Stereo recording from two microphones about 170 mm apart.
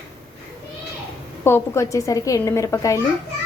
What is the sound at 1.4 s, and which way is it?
A woman's voice, 15° left (ahead or behind).